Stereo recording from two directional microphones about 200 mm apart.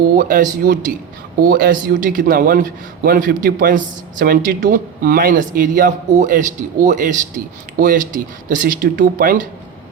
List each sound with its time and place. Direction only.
0.0 s a man's voice: 45° right (ahead or behind)